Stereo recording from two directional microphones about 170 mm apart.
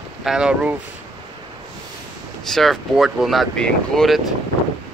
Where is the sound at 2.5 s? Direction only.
Centre (ahead or behind).